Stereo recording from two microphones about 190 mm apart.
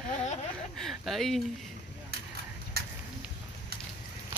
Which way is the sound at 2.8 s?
55° right (ahead or behind).